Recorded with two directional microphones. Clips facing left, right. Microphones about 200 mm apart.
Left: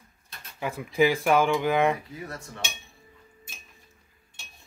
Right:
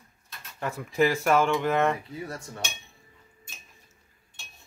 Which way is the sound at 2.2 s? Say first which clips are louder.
Right 1 dB; 30° right (ahead or behind).